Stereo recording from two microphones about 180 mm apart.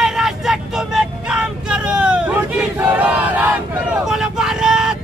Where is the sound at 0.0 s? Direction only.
Centre (ahead or behind).